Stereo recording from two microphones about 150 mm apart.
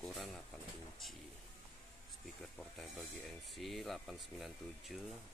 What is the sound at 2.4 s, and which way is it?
Speech, 5° left (ahead or behind).